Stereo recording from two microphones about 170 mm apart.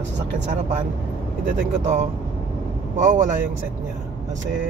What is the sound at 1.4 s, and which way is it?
Speech, 50° right (ahead or behind).